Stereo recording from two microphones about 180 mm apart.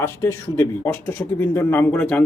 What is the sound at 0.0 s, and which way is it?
Speech, 15° left (ahead or behind).